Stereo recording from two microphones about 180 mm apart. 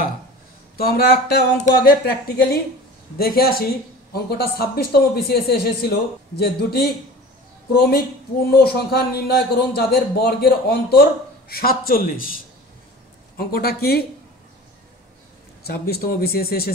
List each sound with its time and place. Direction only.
0.7 s a man's voice: 60° left (ahead or behind)
8.5 s a man's voice: 60° left (ahead or behind)
13.4 s a man's voice: 60° left (ahead or behind)
15.6 s a man's voice: 55° left (ahead or behind)